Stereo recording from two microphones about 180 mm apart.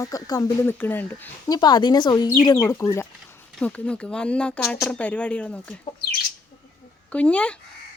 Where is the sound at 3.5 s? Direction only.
5° left (ahead or behind).